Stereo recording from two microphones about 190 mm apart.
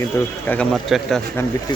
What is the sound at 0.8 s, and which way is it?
Speech, centre (ahead or behind).